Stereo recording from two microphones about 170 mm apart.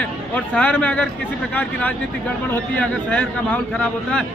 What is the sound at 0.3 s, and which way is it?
A man's voice, 10° left (ahead or behind).